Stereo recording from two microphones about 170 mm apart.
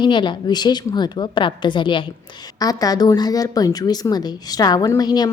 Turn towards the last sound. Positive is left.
turn(degrees=25)  # may be behind; listen again after turning